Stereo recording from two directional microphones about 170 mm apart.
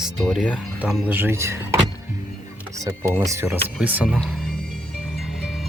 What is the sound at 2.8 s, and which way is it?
Speech, 20° right (ahead or behind).